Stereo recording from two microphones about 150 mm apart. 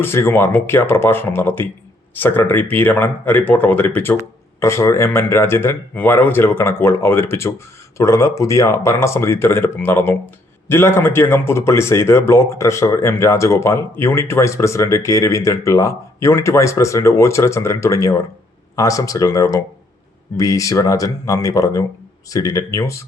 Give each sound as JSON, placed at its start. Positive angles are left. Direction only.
{"t": 0.0, "sound": "speech", "side_deg": 15}